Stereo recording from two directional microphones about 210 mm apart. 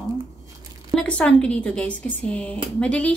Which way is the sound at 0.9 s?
5° left (ahead or behind).